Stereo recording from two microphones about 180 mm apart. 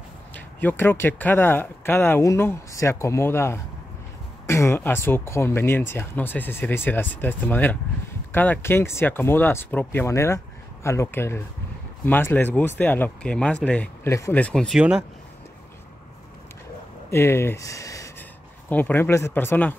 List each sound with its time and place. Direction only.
0.3 s speech: 10° left (ahead or behind)
17.1 s speech: 15° left (ahead or behind)